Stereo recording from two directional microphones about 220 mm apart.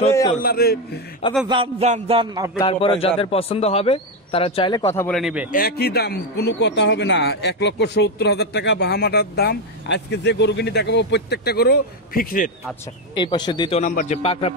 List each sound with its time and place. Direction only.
0.4 s speech: 45° left (ahead or behind)
1.5 s music: 25° right (ahead or behind)
2.6 s a man's voice: 25° left (ahead or behind)
5.0 s a man's voice: centre (ahead or behind)
5.5 s speech: 45° left (ahead or behind)
13.2 s a man's voice: 20° left (ahead or behind)